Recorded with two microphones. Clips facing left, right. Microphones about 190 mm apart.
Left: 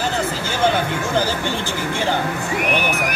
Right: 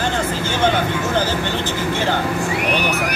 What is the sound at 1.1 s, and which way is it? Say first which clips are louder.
Speech: left 2 dB; 10° left (ahead or behind).